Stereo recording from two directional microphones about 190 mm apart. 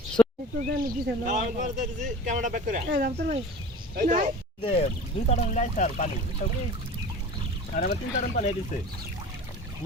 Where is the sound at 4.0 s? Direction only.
40° right (ahead or behind).